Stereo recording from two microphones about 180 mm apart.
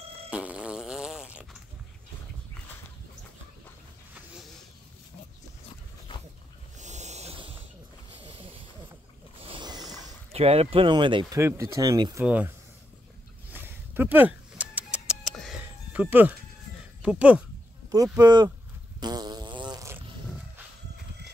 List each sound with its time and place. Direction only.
0.3 s fart: 5° right (ahead or behind)
6.8 s a sound: 40° right (ahead or behind)
9.4 s wild animals: 25° right (ahead or behind)
10.3 s speech: 35° right (ahead or behind)
11.3 s speech: 15° right (ahead or behind)
13.5 s a sound: 10° right (ahead or behind)
15.6 s music: 10° right (ahead or behind)
17.0 s speech: 5° right (ahead or behind)
18.1 s speech: 25° right (ahead or behind)
18.9 s fart: 25° right (ahead or behind)
20.2 s wild animals: 5° right (ahead or behind)